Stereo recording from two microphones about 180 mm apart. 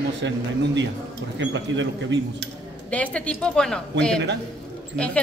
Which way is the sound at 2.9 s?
5° left (ahead or behind).